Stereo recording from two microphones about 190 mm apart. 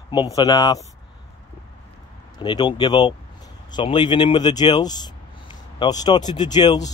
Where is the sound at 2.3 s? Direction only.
25° left (ahead or behind).